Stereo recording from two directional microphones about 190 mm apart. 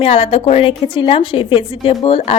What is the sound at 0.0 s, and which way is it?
A woman's voice, 30° left (ahead or behind).